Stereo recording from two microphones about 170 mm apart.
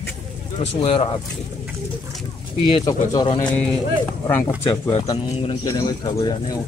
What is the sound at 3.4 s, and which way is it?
Speech, 5° left (ahead or behind).